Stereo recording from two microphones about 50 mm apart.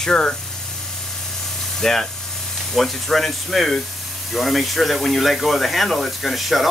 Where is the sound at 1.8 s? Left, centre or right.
Centre.